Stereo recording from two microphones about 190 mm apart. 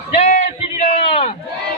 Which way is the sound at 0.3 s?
35° left (ahead or behind).